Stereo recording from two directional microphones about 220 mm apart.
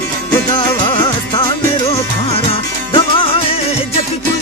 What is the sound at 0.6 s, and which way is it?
Music, 20° left (ahead or behind).